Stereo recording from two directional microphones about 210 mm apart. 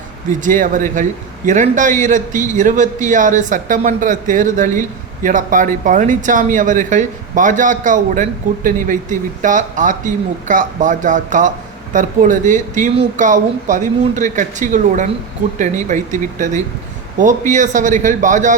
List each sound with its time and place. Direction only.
0.3 s speech: 35° right (ahead or behind)
16.4 s speech: 35° right (ahead or behind)